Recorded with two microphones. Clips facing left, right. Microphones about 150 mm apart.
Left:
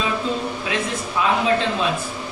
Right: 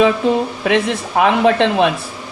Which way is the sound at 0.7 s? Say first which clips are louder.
Right 10 dB; 70° right (ahead or behind).